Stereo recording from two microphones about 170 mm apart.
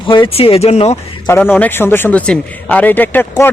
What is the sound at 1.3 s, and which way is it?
Speech, 10° left (ahead or behind).